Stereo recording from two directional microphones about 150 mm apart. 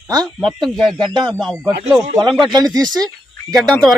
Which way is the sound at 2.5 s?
25° right (ahead or behind).